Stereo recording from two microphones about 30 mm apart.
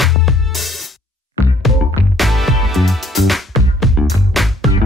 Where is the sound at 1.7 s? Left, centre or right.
Centre.